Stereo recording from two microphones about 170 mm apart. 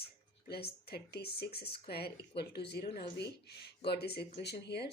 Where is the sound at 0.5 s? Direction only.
70° left (ahead or behind).